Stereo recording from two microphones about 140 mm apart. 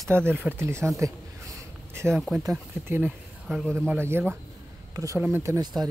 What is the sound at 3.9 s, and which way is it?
Speech, 15° right (ahead or behind).